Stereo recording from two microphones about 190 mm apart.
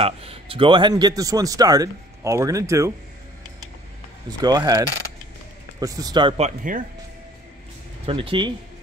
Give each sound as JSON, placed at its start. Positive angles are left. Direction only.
{"t": 0.0, "sound": "speech", "side_deg": -30}
{"t": 4.4, "sound": "speech", "side_deg": -20}
{"t": 8.1, "sound": "speech", "side_deg": -30}